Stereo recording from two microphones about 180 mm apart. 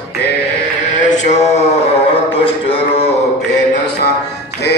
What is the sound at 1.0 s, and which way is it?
Mantra, 40° left (ahead or behind).